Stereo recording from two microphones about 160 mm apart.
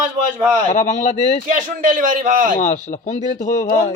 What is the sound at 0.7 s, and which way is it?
Speech, 50° left (ahead or behind).